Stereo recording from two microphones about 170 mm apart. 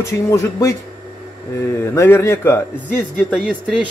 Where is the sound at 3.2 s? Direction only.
Centre (ahead or behind).